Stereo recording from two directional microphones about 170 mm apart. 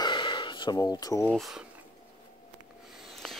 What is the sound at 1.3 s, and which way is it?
Speech, centre (ahead or behind).